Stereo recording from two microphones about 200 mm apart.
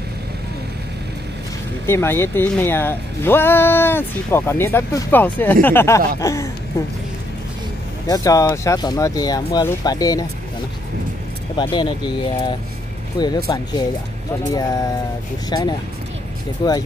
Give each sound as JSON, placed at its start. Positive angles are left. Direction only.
{"t": 1.9, "sound": "speech", "side_deg": 10}
{"t": 8.1, "sound": "speech", "side_deg": 15}
{"t": 11.5, "sound": "speech", "side_deg": 20}
{"t": 14.5, "sound": "speech", "side_deg": 20}